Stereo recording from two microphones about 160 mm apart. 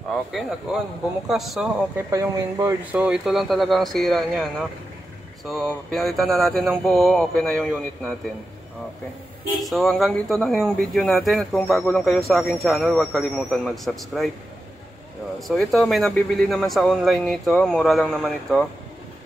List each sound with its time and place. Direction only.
0.1 s speech: centre (ahead or behind)
2.0 s speech: 20° right (ahead or behind)
2.9 s speech: 5° right (ahead or behind)
9.6 s speech: centre (ahead or behind)
15.4 s speech: centre (ahead or behind)